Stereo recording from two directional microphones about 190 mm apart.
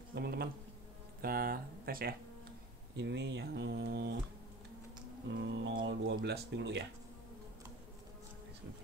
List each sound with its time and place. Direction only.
0.1 s speech: 55° right (ahead or behind)
3.0 s speech: 65° right (ahead or behind)
5.3 s speech: 70° right (ahead or behind)